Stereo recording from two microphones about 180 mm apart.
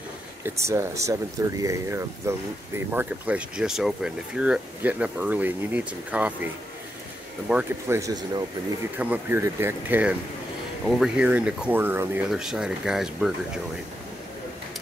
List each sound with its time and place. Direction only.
0.6 s speech: 15° right (ahead or behind)
8.0 s speech: 20° right (ahead or behind)
8.9 s speech: 10° right (ahead or behind)